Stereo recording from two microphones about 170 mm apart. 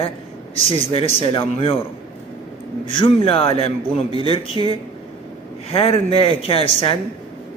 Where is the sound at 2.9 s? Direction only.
30° left (ahead or behind).